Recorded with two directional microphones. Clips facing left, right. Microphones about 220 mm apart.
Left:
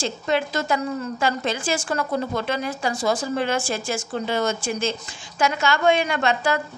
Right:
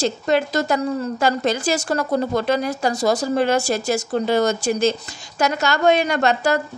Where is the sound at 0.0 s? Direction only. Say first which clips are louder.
Right 4 dB; 40° right (ahead or behind).